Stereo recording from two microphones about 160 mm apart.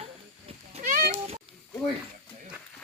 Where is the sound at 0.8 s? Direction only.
55° right (ahead or behind).